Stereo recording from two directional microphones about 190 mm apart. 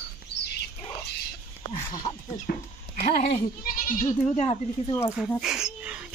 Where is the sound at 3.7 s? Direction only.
45° left (ahead or behind).